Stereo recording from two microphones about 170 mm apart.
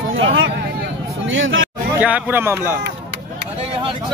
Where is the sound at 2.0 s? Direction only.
10° right (ahead or behind).